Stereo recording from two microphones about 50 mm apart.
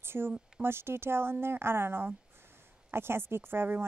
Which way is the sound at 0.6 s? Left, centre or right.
Right.